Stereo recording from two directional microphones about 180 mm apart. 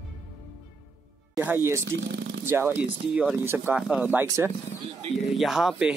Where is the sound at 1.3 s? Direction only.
15° right (ahead or behind).